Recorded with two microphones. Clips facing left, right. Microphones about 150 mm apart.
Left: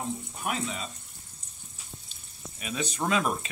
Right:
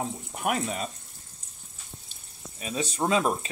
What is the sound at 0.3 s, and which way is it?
Speech, 60° right (ahead or behind).